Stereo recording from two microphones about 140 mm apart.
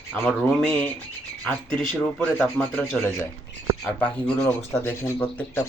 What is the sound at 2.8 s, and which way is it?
Bird, 15° left (ahead or behind).